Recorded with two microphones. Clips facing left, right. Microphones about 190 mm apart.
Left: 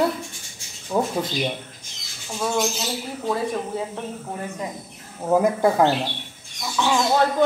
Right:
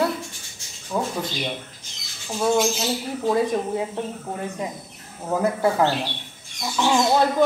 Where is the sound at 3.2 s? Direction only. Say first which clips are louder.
Right 4 dB; 20° right (ahead or behind).